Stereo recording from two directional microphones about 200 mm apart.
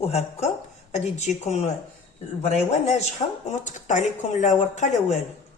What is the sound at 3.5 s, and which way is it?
Speech, 40° left (ahead or behind).